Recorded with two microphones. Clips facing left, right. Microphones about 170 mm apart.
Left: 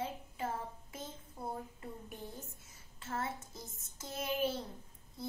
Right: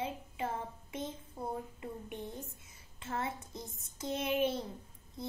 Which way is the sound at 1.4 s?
15° right (ahead or behind).